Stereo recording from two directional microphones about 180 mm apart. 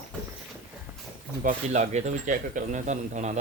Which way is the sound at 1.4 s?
40° right (ahead or behind).